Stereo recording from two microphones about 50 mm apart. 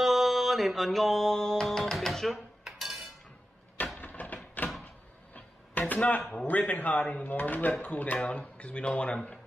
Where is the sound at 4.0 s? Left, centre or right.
Left.